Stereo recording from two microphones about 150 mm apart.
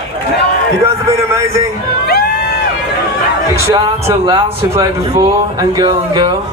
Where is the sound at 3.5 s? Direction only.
20° right (ahead or behind).